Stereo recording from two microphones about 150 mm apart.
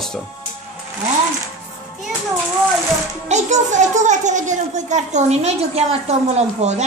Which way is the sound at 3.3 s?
50° right (ahead or behind).